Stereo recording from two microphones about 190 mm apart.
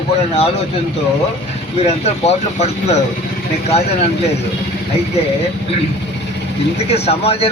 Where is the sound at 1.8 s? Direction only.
35° left (ahead or behind).